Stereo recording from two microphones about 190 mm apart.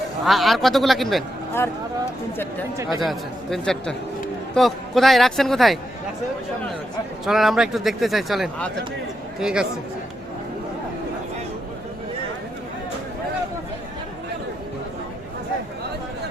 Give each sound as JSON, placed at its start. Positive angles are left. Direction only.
{"t": 0.3, "sound": "speech", "side_deg": 0}
{"t": 2.7, "sound": "speech", "side_deg": -15}
{"t": 3.0, "sound": "speech", "side_deg": 0}
{"t": 7.3, "sound": "speech", "side_deg": 0}